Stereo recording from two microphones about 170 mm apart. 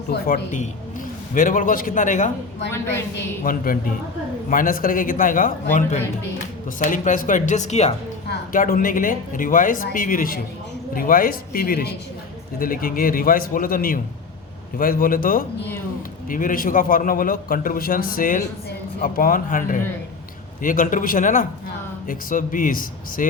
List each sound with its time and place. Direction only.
0.1 s speech: 75° left (ahead or behind)
1.3 s speech: 50° left (ahead or behind)
2.6 s a woman's voice: 15° left (ahead or behind)
3.4 s a man's voice: 55° left (ahead or behind)
8.5 s a man's voice: 55° left (ahead or behind)